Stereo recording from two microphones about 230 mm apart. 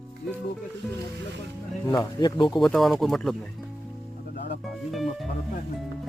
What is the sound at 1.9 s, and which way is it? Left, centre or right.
Speech, centre.